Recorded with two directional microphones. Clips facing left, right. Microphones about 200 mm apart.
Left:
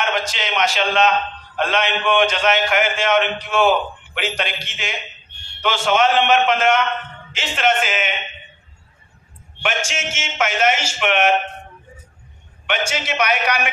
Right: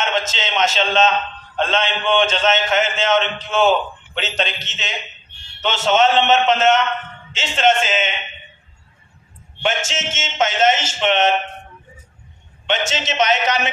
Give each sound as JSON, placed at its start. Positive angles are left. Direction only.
{"t": 0.0, "sound": "a man's voice", "side_deg": -25}
{"t": 9.6, "sound": "a man's voice", "side_deg": -25}
{"t": 12.6, "sound": "a man's voice", "side_deg": -25}